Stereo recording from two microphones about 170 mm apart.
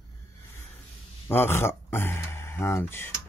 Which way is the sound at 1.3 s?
15° left (ahead or behind).